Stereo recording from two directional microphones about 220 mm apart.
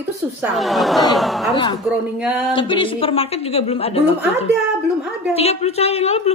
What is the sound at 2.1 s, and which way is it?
Speech, 5° right (ahead or behind).